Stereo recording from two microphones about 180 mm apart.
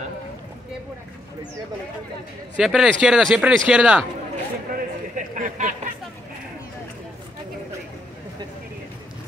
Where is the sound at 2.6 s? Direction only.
5° right (ahead or behind).